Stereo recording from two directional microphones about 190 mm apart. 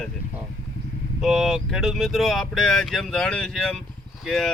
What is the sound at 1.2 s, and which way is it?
Speech, centre (ahead or behind).